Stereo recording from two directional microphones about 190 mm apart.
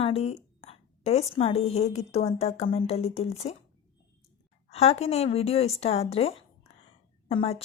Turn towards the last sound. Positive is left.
turn(degrees=30)  # may be behind; listen again after turning